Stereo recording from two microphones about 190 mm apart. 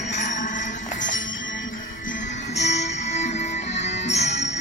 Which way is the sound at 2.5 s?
35° left (ahead or behind).